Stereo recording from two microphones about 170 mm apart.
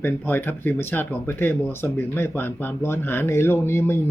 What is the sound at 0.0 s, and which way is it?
Speech, 10° left (ahead or behind).